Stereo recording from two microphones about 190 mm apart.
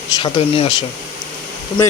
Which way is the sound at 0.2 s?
30° left (ahead or behind).